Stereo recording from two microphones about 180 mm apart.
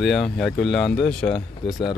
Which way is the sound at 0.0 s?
Centre (ahead or behind).